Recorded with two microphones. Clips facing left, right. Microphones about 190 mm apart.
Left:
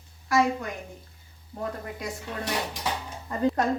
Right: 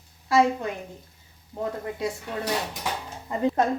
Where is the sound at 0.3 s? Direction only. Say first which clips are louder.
Right 3 dB; 25° right (ahead or behind).